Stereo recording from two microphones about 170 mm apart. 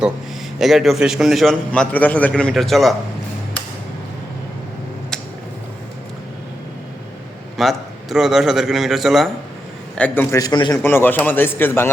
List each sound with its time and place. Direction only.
0.6 s a man's voice: centre (ahead or behind)
7.5 s a man's voice: centre (ahead or behind)
10.3 s a man's voice: 25° left (ahead or behind)
10.8 s a man's voice: 10° left (ahead or behind)